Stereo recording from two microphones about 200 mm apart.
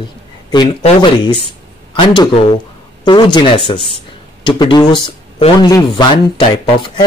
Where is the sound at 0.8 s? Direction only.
25° left (ahead or behind).